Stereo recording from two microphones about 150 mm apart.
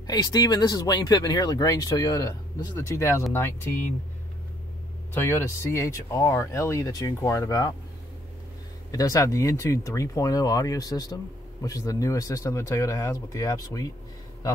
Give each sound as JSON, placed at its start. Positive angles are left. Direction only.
{"t": 0.0, "sound": "speech", "side_deg": 25}
{"t": 5.1, "sound": "speech", "side_deg": 15}
{"t": 8.9, "sound": "speech", "side_deg": 20}